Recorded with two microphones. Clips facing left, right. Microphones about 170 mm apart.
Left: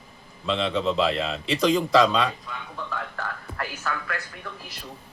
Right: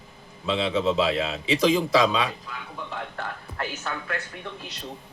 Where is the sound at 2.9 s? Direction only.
25° right (ahead or behind).